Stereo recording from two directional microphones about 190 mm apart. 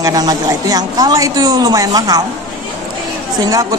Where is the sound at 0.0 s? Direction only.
20° right (ahead or behind).